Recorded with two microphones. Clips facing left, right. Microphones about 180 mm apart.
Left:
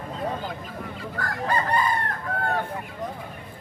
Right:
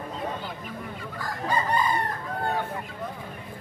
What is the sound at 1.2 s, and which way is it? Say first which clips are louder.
Chicken: left 1 dB; 60° left (ahead or behind).